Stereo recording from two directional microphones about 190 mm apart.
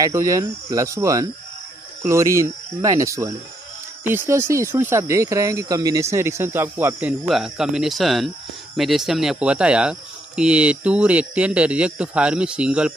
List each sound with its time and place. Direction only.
0.0 s speech: 15° right (ahead or behind)